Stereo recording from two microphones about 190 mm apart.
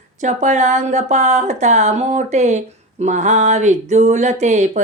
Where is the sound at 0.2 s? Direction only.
40° right (ahead or behind).